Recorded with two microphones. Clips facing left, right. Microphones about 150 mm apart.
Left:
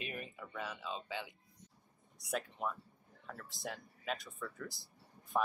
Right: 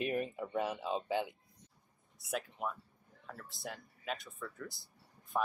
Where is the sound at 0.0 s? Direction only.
40° right (ahead or behind).